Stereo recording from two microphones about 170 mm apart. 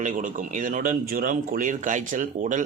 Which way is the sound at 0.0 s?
50° right (ahead or behind).